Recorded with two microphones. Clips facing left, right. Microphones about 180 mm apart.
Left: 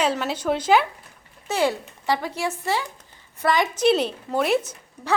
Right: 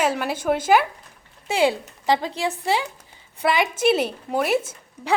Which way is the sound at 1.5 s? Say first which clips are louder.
Right 2 dB; 15° right (ahead or behind).